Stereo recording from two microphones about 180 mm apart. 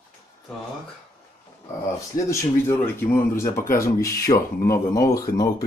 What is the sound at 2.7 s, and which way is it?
Speech, 15° left (ahead or behind).